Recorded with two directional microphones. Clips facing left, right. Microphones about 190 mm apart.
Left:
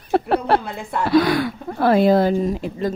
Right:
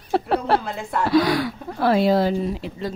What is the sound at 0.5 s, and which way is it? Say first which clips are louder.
A woman's voice: left 2 dB; 60° left (ahead or behind).